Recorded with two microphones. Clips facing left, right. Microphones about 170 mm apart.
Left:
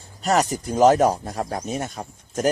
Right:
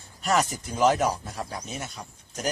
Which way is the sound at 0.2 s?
40° left (ahead or behind).